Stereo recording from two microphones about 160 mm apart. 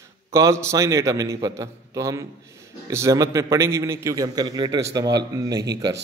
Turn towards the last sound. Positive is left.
turn(degrees=-25)  # may be behind; listen again after turning